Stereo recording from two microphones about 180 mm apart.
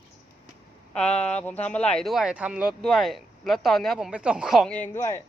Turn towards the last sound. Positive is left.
turn(degrees=15)  # may be behind; listen again after turning